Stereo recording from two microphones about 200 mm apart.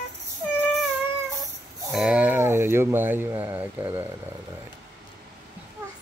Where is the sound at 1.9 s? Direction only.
5° right (ahead or behind).